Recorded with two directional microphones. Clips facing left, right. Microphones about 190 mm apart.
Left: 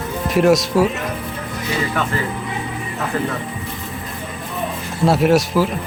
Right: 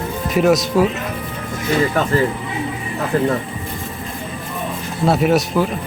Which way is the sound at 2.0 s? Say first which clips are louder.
Right 3 dB; 45° right (ahead or behind).